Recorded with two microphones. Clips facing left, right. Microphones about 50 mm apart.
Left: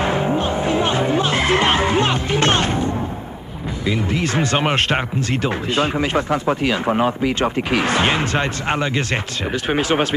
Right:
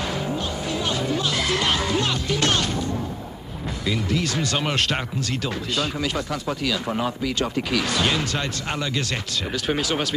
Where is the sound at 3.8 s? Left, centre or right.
Left.